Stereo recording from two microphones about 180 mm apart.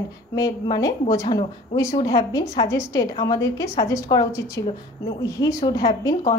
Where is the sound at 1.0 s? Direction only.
35° left (ahead or behind).